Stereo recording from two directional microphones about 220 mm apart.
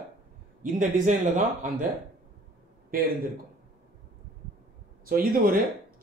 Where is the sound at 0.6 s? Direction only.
35° right (ahead or behind).